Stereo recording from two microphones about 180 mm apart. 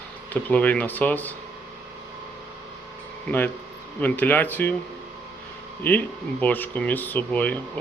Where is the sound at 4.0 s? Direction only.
10° left (ahead or behind).